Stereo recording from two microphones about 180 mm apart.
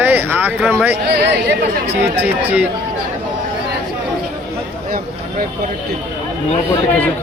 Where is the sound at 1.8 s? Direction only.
35° right (ahead or behind).